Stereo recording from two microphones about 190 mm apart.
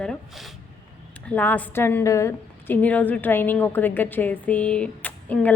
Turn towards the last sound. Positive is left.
turn(degrees=10)  # may be behind; listen again after turning